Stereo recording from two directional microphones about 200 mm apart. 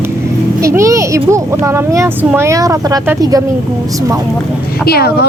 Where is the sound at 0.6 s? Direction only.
15° right (ahead or behind).